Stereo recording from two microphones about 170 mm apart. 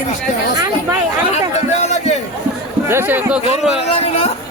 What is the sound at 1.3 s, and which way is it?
Speech, 40° left (ahead or behind).